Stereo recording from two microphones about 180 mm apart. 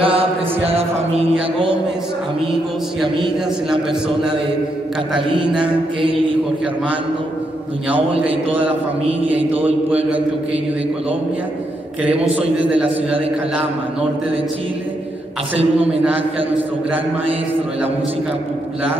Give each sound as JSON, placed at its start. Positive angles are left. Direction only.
{"t": 0.0, "sound": "chant", "side_deg": -30}
{"t": 3.7, "sound": "a man's voice", "side_deg": -5}
{"t": 9.5, "sound": "a man's voice", "side_deg": -10}
{"t": 12.0, "sound": "a man's voice", "side_deg": -5}
{"t": 15.9, "sound": "a man's voice", "side_deg": -5}